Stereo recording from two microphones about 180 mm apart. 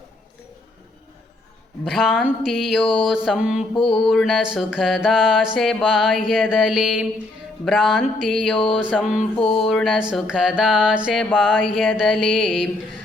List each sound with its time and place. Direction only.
1.8 s mantra: centre (ahead or behind)
3.8 s mantra: 30° left (ahead or behind)
4.0 s mantra: centre (ahead or behind)
8.5 s mantra: 30° left (ahead or behind)
9.6 s mantra: centre (ahead or behind)